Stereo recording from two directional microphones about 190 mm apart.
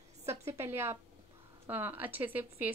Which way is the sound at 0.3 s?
15° right (ahead or behind).